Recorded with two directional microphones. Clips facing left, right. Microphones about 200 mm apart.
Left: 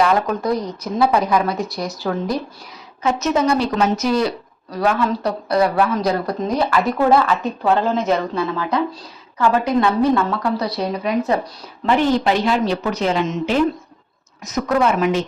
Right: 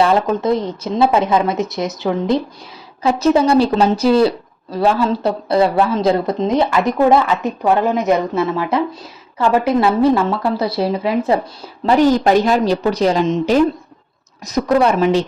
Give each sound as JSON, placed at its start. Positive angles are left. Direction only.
{"t": 0.0, "sound": "a woman's voice", "side_deg": -25}
{"t": 3.0, "sound": "a woman's voice", "side_deg": -35}
{"t": 11.9, "sound": "a woman's voice", "side_deg": -40}